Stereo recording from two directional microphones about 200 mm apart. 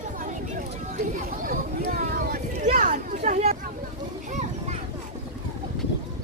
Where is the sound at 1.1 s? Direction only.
45° right (ahead or behind).